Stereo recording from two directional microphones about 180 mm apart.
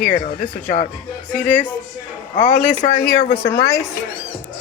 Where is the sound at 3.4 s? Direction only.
15° left (ahead or behind).